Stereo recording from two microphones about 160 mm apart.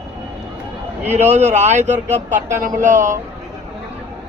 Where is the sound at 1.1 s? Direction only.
45° right (ahead or behind).